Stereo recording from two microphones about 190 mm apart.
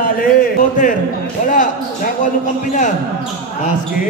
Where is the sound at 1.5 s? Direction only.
45° left (ahead or behind).